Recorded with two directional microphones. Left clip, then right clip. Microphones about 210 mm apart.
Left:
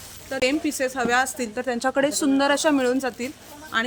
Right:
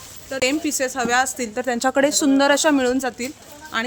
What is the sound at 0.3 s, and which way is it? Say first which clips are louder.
A woman's voice: right 2 dB; 15° right (ahead or behind).